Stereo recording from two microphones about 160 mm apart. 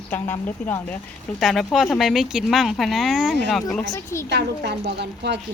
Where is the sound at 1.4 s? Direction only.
Centre (ahead or behind).